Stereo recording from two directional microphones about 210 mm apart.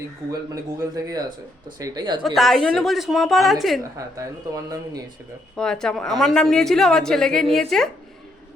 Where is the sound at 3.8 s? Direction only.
15° right (ahead or behind).